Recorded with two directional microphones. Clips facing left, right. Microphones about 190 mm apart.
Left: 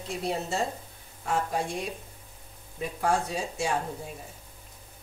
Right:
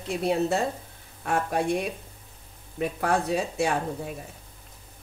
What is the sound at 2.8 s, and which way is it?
A woman's voice, 60° right (ahead or behind).